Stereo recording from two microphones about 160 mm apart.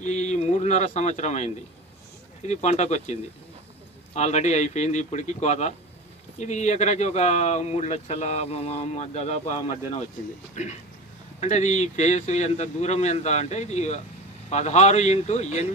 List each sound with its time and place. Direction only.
0.0 s speech: 45° left (ahead or behind)